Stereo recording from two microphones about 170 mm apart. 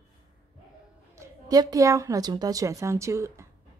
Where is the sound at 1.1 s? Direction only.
20° right (ahead or behind).